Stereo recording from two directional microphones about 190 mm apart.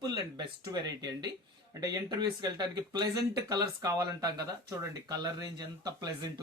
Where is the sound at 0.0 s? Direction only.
20° right (ahead or behind).